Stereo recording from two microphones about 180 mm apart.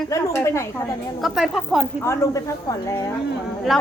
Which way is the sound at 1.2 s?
Centre (ahead or behind).